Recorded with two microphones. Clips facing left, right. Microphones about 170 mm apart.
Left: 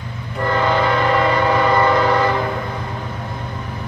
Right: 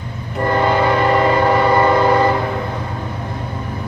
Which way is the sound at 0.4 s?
20° right (ahead or behind).